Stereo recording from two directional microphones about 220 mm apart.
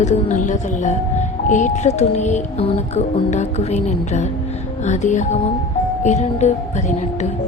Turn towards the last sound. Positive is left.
turn(degrees=30)  # may be behind; listen again after turning